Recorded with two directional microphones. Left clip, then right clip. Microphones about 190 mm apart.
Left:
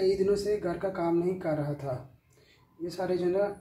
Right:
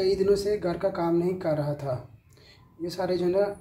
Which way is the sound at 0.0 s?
35° right (ahead or behind).